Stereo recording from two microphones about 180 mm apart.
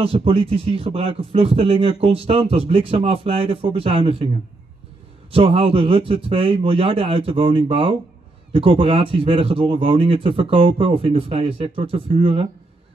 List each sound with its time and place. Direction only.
0.0 s speech: 30° right (ahead or behind)
5.3 s speech: 30° right (ahead or behind)